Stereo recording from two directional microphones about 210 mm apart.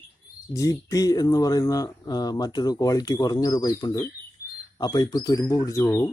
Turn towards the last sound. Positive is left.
turn(degrees=15)  # may be behind; listen again after turning